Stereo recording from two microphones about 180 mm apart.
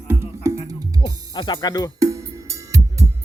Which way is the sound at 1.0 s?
25° left (ahead or behind).